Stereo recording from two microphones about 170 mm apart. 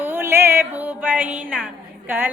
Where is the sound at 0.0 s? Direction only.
10° right (ahead or behind).